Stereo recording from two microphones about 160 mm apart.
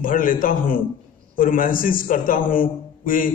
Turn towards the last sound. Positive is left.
turn(degrees=60)  # may be behind; listen again after turning